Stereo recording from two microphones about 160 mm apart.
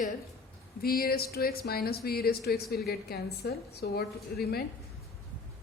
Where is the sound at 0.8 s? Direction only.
70° left (ahead or behind).